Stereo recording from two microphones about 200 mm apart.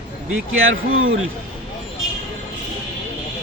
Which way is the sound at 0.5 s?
85° right.